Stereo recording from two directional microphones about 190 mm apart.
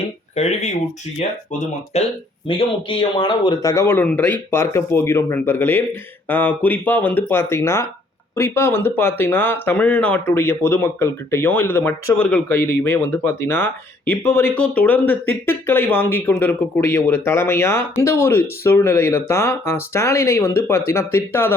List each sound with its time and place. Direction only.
0.3 s speech: 35° left (ahead or behind)
1.9 s speech: 35° left (ahead or behind); by 21.5 s 15° left (ahead or behind)